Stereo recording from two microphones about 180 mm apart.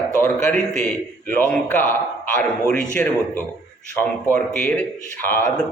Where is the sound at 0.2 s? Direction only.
15° left (ahead or behind).